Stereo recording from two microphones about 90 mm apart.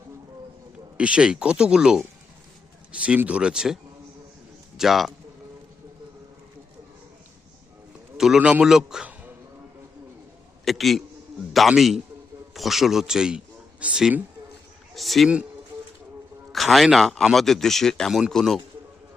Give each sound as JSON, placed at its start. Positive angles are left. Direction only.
{"t": 0.9, "sound": "speech", "side_deg": -10}
{"t": 4.8, "sound": "speech", "side_deg": -5}
{"t": 8.4, "sound": "speech", "side_deg": -15}
{"t": 8.6, "sound": "speech", "side_deg": -5}
{"t": 10.7, "sound": "a man's voice", "side_deg": 0}
{"t": 14.9, "sound": "speech", "side_deg": 0}
{"t": 16.5, "sound": "speech", "side_deg": 0}